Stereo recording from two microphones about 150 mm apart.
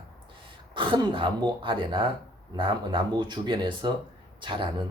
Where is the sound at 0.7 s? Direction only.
35° right (ahead or behind).